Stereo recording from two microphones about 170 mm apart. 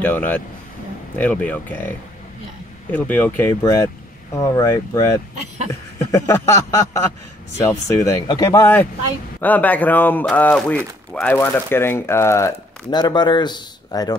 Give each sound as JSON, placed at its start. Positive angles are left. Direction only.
{"t": 0.0, "sound": "a man's voice", "side_deg": 10}